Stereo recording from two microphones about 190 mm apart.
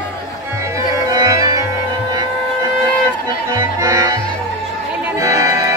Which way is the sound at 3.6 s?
15° right (ahead or behind).